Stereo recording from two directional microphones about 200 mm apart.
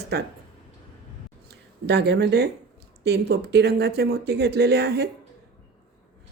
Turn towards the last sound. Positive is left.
turn(degrees=-55)  # may be behind; listen again after turning